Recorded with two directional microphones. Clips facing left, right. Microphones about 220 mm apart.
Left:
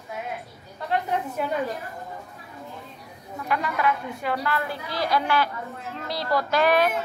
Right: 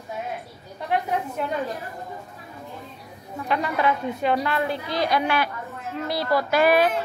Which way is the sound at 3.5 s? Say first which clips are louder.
Right 2 dB; 25° right (ahead or behind).